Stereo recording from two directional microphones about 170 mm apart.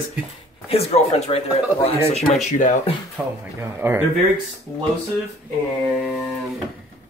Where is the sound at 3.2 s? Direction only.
10° right (ahead or behind).